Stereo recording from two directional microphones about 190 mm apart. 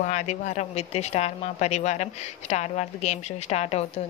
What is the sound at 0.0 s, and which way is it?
A woman's voice, 40° left (ahead or behind).